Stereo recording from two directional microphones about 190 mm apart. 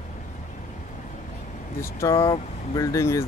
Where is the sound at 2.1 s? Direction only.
30° left (ahead or behind).